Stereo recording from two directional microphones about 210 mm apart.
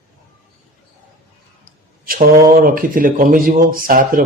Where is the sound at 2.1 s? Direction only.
40° right (ahead or behind).